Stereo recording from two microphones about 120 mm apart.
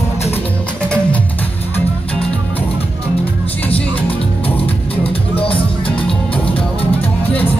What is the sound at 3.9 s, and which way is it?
Music, 50° left (ahead or behind).